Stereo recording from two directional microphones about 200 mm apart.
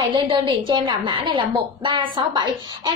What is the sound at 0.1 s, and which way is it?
A woman's voice, 25° right (ahead or behind).